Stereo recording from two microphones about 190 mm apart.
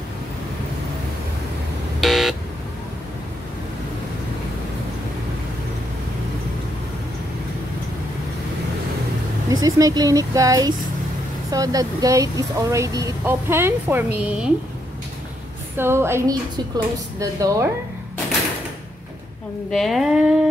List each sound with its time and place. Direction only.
2.0 s buzzer: centre (ahead or behind)
9.5 s speech: 20° right (ahead or behind)
15.8 s speech: 15° right (ahead or behind)
19.7 s speech: centre (ahead or behind)